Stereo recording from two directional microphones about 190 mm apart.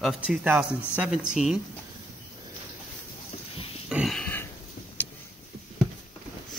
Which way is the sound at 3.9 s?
Centre (ahead or behind).